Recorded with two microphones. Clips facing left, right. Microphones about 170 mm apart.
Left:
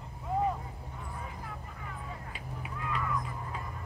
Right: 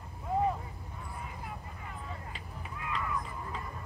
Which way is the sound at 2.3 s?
10° left (ahead or behind).